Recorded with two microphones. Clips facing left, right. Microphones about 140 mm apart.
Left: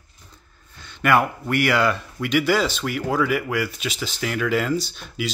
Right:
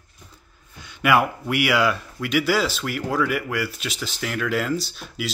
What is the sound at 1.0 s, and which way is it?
Speech, 5° right (ahead or behind).